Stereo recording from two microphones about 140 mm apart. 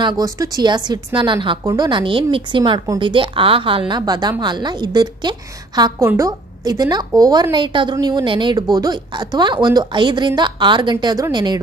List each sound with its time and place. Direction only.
0.0 s a woman's voice: 25° right (ahead or behind)